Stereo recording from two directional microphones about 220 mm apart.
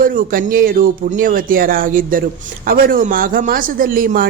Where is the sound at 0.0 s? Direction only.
40° right (ahead or behind).